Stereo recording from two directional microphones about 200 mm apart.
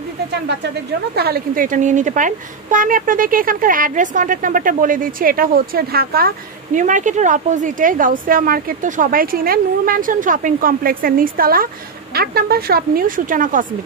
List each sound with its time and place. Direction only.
1.1 s a woman's voice: 50° right (ahead or behind)